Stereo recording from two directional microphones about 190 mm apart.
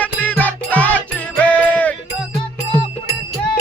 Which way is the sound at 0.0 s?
10° left (ahead or behind).